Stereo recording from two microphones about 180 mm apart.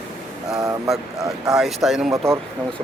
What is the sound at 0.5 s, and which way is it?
Vehicle, 15° right (ahead or behind).